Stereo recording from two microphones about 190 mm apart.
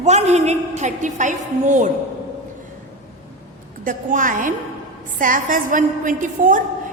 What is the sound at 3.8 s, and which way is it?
A woman's voice, 45° right (ahead or behind).